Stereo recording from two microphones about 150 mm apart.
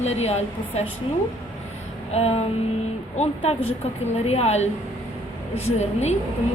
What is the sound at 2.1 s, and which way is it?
A woman's voice, 45° left (ahead or behind).